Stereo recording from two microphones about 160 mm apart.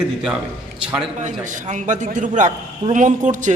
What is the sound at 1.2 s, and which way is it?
A man's voice, 50° right (ahead or behind).